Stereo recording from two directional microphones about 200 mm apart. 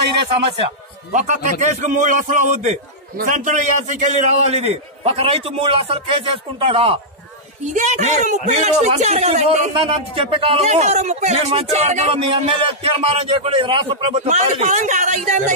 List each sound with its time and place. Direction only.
1.1 s a man's voice: 35° right (ahead or behind)